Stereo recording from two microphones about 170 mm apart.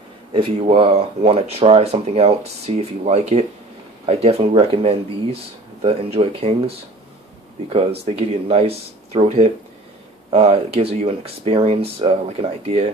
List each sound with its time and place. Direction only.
0.7 s speech: 35° right (ahead or behind)
8.0 s speech: 40° right (ahead or behind)